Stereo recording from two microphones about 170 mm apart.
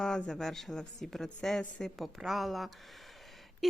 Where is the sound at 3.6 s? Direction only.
Centre (ahead or behind).